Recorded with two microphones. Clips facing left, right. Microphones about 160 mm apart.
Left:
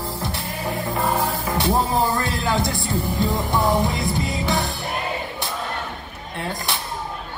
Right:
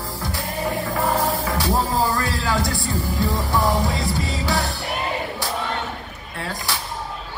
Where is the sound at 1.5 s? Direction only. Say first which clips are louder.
Left 1 dB; 25° left (ahead or behind).